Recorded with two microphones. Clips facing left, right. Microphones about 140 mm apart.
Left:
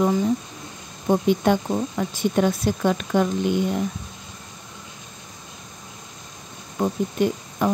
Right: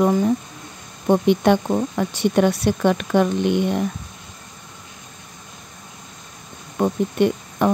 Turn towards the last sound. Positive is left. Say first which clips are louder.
# right 3 dB
turn(degrees=-65)  # may be behind; listen again after turning